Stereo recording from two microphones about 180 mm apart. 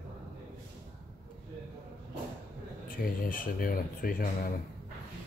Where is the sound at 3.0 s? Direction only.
50° left (ahead or behind).